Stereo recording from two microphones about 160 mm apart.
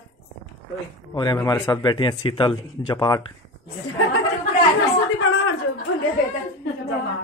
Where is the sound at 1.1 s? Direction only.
25° left (ahead or behind).